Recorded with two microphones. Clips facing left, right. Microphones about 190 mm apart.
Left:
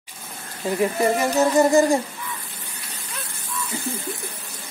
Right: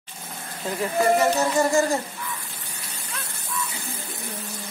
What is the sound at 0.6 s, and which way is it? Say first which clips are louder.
Music: left 2 dB; 15° left (ahead or behind).